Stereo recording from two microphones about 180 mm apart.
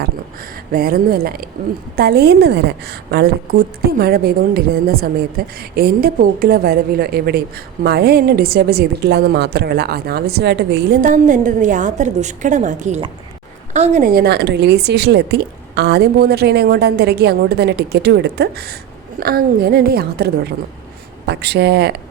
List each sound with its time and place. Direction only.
0.7 s a woman's voice: 55° right (ahead or behind)
11.0 s a woman's voice: 45° right (ahead or behind)
14.1 s a woman's voice: 60° right (ahead or behind)